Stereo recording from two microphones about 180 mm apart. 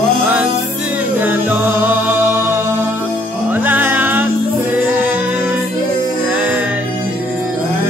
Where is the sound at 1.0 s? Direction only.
10° right (ahead or behind).